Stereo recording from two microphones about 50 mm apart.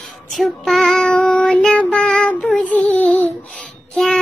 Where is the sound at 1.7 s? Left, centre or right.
Left.